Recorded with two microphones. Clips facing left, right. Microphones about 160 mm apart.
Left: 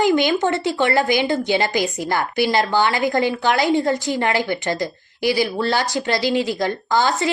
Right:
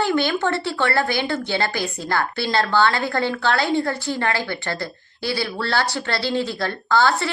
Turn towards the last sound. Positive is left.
turn(degrees=15)  # may be behind; listen again after turning